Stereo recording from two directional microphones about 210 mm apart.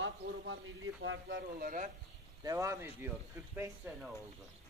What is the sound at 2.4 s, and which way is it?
A man's voice, 15° right (ahead or behind).